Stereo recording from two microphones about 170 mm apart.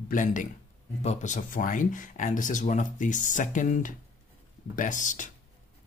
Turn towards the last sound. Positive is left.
turn(degrees=50)  # may be behind; listen again after turning